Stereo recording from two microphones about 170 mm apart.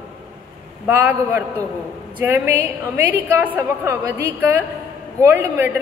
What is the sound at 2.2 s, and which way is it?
A woman's voice, 15° right (ahead or behind).